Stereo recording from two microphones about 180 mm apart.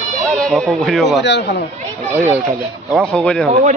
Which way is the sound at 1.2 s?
75° left (ahead or behind).